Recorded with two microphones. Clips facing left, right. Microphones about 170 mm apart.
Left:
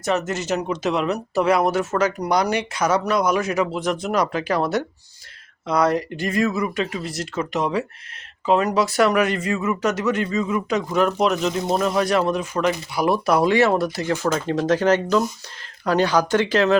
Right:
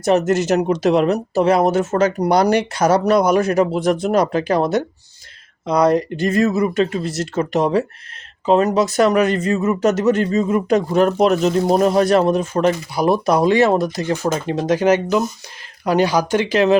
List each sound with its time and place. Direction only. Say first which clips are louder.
0.0 s speech: right 7 dB; 40° right (ahead or behind)
3.4 s speech: right 6 dB; 55° right (ahead or behind)
3.8 s speech: right 5 dB; 30° right (ahead or behind)
9.3 s speech: right 5 dB; 40° right (ahead or behind)
13.2 s speech: right 2 dB; 20° right (ahead or behind)